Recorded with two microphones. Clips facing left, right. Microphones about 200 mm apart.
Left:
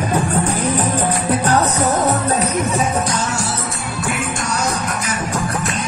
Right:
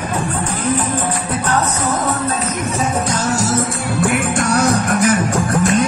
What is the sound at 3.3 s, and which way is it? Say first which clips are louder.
Music: right 6 dB; 40° right (ahead or behind).